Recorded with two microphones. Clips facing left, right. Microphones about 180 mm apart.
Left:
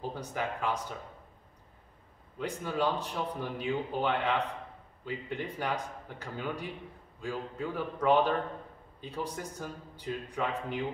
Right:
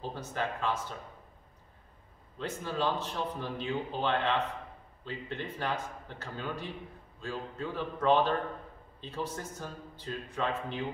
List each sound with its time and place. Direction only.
0.2 s speech: 15° left (ahead or behind)
2.3 s speech: 10° left (ahead or behind)